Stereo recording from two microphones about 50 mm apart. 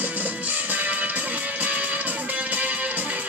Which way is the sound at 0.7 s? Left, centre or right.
Right.